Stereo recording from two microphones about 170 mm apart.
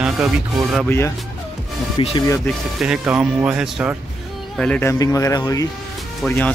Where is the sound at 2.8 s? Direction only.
5° right (ahead or behind).